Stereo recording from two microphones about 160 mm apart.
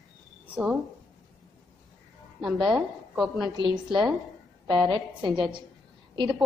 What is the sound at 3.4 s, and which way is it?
A woman's voice, 25° right (ahead or behind).